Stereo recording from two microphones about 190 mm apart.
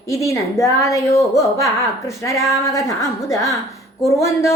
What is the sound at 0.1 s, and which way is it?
A woman's voice, 15° left (ahead or behind).